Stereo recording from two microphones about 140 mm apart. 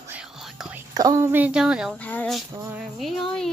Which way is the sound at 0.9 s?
25° right (ahead or behind).